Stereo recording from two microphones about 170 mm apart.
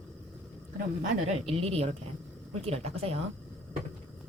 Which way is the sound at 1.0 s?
40° right (ahead or behind).